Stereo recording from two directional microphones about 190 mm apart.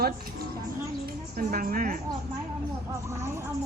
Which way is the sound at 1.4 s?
50° right (ahead or behind).